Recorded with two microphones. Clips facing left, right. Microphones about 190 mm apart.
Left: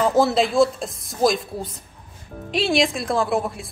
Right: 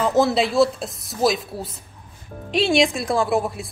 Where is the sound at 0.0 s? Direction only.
Centre (ahead or behind).